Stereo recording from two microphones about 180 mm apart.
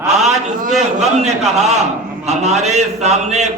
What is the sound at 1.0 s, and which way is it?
A man's voice, 40° right (ahead or behind).